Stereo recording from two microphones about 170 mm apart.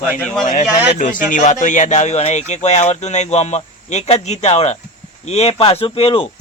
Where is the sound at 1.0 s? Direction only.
50° left (ahead or behind); by 6.2 s 30° left (ahead or behind).